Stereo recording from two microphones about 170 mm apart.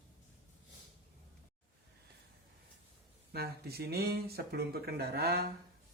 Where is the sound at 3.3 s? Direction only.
65° right (ahead or behind).